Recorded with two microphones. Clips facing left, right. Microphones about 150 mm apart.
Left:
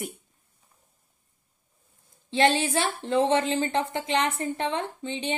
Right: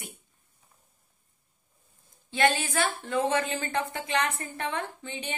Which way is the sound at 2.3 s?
30° left (ahead or behind).